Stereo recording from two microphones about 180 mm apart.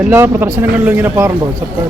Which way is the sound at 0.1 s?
15° right (ahead or behind).